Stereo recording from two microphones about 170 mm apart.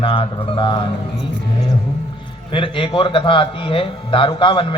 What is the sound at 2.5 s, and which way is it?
A man's voice, 30° left (ahead or behind).